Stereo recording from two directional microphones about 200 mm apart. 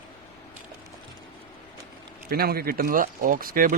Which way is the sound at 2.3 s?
50° right (ahead or behind).